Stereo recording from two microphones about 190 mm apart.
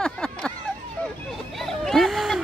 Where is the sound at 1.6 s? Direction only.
Centre (ahead or behind).